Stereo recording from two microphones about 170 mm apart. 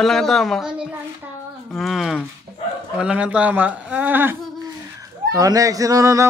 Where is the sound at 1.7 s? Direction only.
Centre (ahead or behind).